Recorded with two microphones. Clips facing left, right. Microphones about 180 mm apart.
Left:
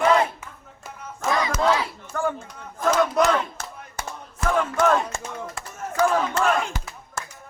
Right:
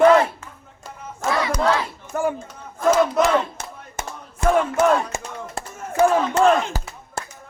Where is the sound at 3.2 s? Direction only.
20° right (ahead or behind).